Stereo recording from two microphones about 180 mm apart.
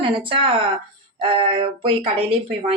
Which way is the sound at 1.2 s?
30° right (ahead or behind).